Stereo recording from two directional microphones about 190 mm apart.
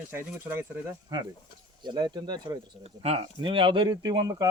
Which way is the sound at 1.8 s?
20° right (ahead or behind).